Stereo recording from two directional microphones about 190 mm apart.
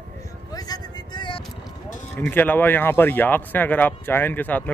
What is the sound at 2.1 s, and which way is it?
Speech, 10° left (ahead or behind).